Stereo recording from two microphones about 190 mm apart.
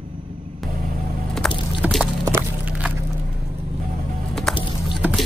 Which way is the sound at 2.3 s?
10° right (ahead or behind).